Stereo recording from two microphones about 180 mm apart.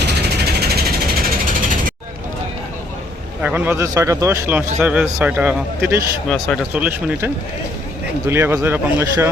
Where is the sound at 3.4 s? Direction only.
10° right (ahead or behind).